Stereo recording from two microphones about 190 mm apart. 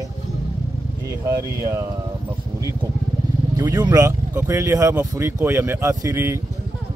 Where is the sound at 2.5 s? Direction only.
15° right (ahead or behind).